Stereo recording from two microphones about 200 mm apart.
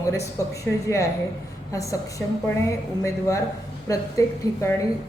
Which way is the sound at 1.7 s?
15° left (ahead or behind).